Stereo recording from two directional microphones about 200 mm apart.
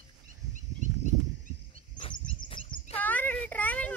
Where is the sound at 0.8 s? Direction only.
40° right (ahead or behind).